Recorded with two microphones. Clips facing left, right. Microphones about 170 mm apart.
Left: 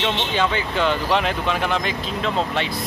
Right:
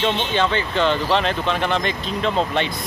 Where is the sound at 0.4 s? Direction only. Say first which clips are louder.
Right 1 dB; 10° left (ahead or behind).